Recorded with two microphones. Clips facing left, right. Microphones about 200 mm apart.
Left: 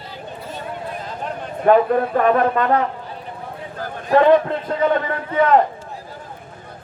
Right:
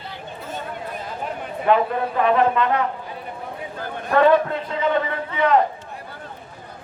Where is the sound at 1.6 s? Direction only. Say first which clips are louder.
Left 5 dB; 45° left (ahead or behind).